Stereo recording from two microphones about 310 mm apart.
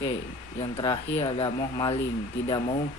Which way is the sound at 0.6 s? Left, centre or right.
Centre.